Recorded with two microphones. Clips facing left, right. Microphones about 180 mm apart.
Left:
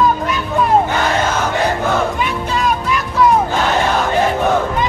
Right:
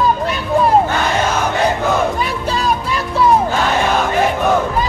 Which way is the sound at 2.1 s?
35° right (ahead or behind).